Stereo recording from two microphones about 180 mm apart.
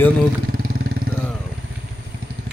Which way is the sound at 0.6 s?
55° right (ahead or behind).